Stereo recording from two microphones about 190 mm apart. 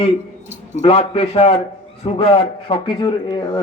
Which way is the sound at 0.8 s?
30° left (ahead or behind).